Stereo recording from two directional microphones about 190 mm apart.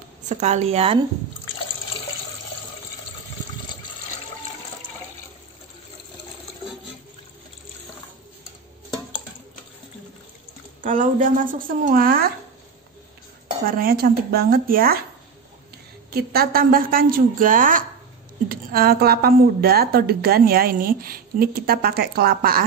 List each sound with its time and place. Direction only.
0.3 s a woman's voice: 35° right (ahead or behind)
10.8 s a woman's voice: 45° right (ahead or behind)
13.7 s a woman's voice: 50° right (ahead or behind)
16.1 s a woman's voice: 55° right (ahead or behind)